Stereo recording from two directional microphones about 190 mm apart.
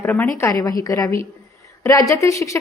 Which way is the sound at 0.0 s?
10° left (ahead or behind).